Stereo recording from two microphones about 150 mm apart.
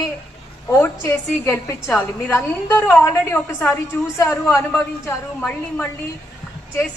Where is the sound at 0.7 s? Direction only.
15° left (ahead or behind).